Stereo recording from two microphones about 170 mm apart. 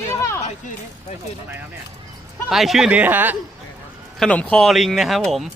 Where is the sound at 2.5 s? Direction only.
Centre (ahead or behind).